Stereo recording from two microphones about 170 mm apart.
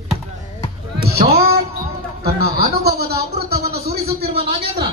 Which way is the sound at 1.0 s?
65° right (ahead or behind).